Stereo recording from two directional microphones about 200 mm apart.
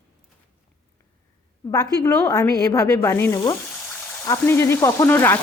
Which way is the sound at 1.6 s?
20° left (ahead or behind).